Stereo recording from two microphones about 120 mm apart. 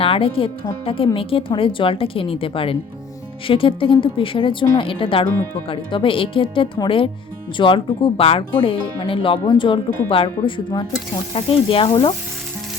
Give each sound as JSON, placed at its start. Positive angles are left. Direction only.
{"t": 0.0, "sound": "speech", "side_deg": 50}